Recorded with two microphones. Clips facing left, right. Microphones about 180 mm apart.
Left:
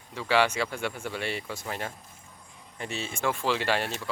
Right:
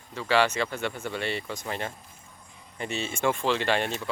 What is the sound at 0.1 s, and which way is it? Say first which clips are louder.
Speech: right 1 dB; 10° left (ahead or behind).